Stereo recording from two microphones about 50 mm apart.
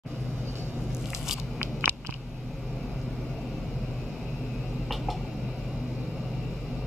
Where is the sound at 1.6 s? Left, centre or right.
Right.